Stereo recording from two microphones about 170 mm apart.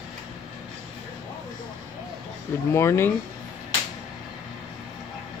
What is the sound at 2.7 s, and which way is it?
Speech, 15° left (ahead or behind).